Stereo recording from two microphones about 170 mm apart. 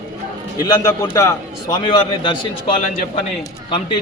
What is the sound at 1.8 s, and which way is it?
Speech, 30° left (ahead or behind).